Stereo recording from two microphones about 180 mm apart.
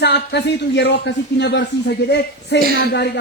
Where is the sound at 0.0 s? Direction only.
70° left (ahead or behind).